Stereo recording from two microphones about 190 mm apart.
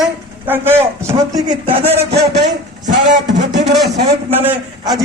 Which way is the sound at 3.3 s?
70° right (ahead or behind).